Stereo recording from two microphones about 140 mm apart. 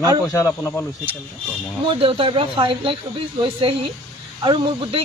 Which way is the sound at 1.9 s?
40° right (ahead or behind).